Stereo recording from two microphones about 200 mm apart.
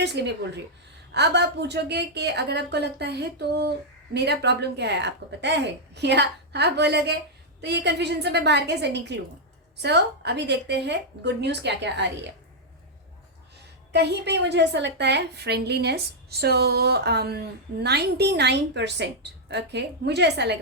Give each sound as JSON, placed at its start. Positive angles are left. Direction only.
{"t": 0.0, "sound": "a woman's voice", "side_deg": -60}
{"t": 13.9, "sound": "a woman's voice", "side_deg": -55}